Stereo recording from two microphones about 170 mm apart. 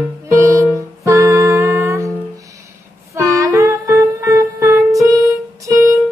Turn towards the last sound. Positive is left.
turn(degrees=-20)  # may be behind; listen again after turning